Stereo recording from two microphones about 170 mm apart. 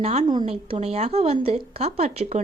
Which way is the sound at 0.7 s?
35° right (ahead or behind).